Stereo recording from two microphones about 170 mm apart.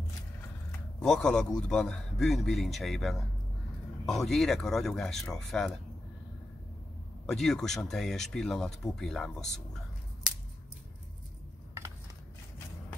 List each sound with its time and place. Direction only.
0.9 s a man's voice: 5° left (ahead or behind)
7.2 s a man's voice: centre (ahead or behind)